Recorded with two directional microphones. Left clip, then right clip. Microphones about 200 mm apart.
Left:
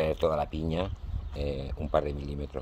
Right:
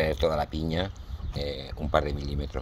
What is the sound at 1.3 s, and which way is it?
Speech, centre (ahead or behind).